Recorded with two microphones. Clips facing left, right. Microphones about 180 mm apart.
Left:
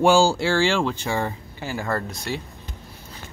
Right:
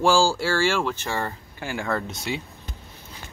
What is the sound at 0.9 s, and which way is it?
Speech, 15° left (ahead or behind).